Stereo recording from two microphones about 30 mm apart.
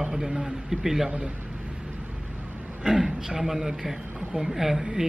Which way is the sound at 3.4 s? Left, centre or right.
Centre.